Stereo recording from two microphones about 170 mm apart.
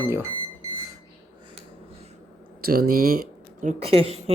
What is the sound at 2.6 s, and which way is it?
Speech, 60° right (ahead or behind).